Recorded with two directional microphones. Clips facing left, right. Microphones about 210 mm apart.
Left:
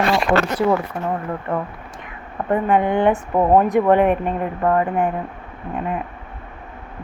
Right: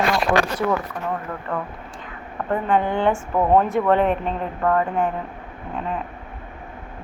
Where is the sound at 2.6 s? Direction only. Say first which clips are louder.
Left 2 dB; 10° left (ahead or behind).